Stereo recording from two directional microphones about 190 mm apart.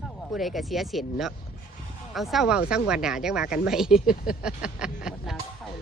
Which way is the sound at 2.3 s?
5° right (ahead or behind).